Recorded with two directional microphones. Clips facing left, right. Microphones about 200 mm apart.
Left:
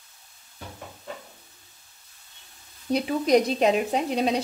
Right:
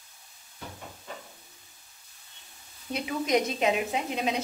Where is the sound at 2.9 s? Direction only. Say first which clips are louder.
Left 6 dB; 35° left (ahead or behind).